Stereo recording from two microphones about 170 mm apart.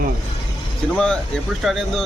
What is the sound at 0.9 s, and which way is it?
Speech, 5° left (ahead or behind).